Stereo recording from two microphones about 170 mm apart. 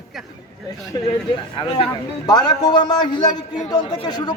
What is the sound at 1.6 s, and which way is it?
A man's voice, 30° left (ahead or behind).